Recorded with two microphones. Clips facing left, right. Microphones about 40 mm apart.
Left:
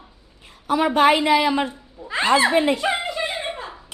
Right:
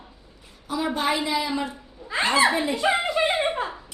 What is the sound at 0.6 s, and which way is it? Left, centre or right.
A woman's voice, left.